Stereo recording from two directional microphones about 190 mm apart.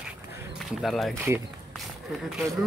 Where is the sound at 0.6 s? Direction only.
Centre (ahead or behind).